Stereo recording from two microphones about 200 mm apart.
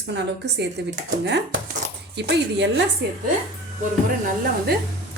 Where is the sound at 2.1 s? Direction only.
60° right (ahead or behind).